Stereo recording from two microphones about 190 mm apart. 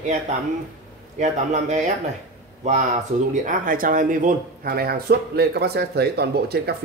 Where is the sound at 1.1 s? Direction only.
40° right (ahead or behind).